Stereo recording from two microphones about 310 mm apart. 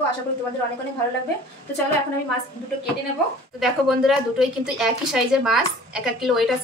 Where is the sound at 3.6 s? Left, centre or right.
Centre.